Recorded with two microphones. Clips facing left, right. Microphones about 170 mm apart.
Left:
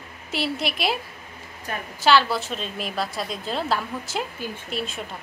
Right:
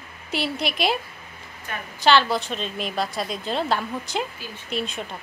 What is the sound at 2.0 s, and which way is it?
A woman's voice, 5° left (ahead or behind).